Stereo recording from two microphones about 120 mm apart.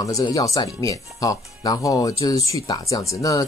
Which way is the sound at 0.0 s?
30° left (ahead or behind).